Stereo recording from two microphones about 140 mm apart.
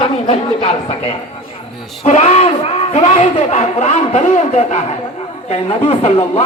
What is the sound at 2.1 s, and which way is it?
A man's voice, 50° left (ahead or behind).